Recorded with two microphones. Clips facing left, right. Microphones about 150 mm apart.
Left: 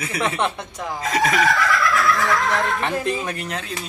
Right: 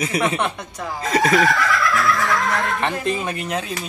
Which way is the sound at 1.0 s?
Centre (ahead or behind).